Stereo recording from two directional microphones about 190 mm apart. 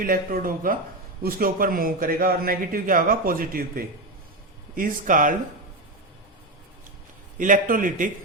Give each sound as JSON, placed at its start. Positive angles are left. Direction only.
{"t": 0.0, "sound": "a man's voice", "side_deg": -50}
{"t": 7.3, "sound": "a man's voice", "side_deg": -45}